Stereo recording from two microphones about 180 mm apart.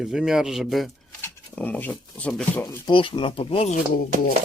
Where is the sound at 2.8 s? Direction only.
25° left (ahead or behind).